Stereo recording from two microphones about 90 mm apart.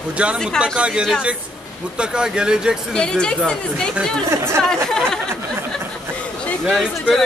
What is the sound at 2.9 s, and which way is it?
A woman's voice, 10° left (ahead or behind).